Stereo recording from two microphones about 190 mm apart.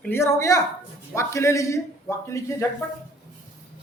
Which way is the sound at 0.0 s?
15° left (ahead or behind).